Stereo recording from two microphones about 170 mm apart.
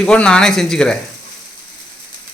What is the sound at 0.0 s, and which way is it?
Speech, 5° left (ahead or behind).